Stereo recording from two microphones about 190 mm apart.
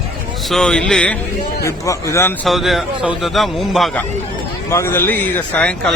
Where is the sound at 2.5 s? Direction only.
Centre (ahead or behind).